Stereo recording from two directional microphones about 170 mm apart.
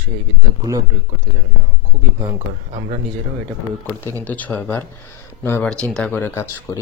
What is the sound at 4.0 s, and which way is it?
Speech, 10° left (ahead or behind).